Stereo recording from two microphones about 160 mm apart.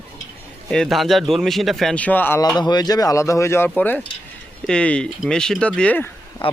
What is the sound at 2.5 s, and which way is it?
A man's voice, 25° left (ahead or behind).